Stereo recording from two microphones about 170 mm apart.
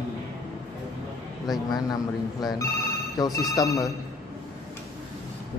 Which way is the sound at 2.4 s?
25° left (ahead or behind).